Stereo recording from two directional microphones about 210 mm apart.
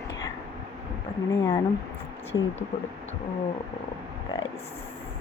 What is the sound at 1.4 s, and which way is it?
Speech, 15° left (ahead or behind).